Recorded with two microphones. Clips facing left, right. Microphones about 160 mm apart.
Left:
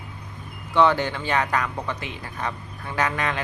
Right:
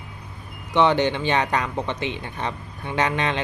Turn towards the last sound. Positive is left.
turn(degrees=-20)  # may be behind; listen again after turning